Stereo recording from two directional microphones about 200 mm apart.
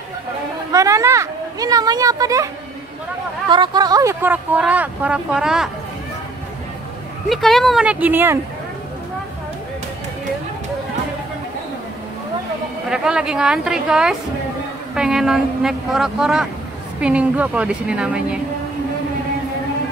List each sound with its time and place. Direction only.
0.7 s speech: 15° right (ahead or behind)
7.2 s speech: centre (ahead or behind)
12.9 s speech: 5° right (ahead or behind)